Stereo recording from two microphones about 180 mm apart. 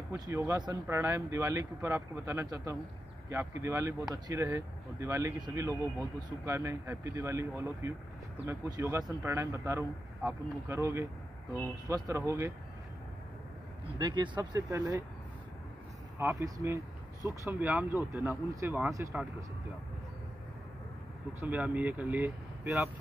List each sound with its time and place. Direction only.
0.1 s speech: 10° right (ahead or behind)
13.9 s speech: 25° right (ahead or behind)
16.2 s speech: 15° right (ahead or behind)
21.3 s speech: 10° right (ahead or behind)